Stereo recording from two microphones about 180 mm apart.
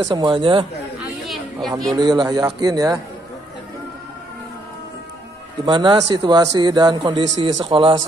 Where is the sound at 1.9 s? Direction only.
25° right (ahead or behind).